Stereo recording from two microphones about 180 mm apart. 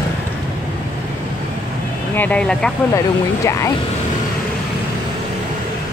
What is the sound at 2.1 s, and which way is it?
Speech, 10° left (ahead or behind).